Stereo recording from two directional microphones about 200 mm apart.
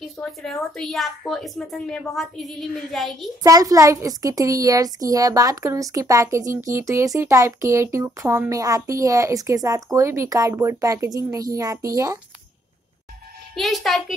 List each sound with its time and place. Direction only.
0.4 s a woman's voice: centre (ahead or behind)
3.4 s speech: 15° right (ahead or behind)
13.6 s a woman's voice: centre (ahead or behind)